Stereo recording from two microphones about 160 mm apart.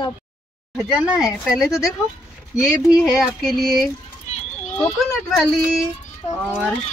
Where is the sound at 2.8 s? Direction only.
25° left (ahead or behind).